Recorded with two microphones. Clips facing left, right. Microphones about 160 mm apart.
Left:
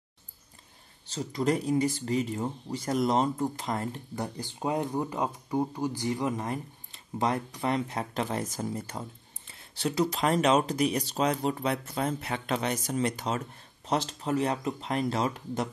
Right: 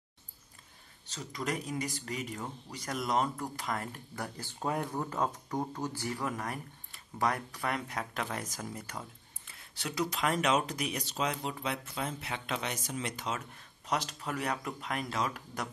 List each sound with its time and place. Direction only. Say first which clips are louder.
1.0 s speech: left 9 dB; 30° left (ahead or behind)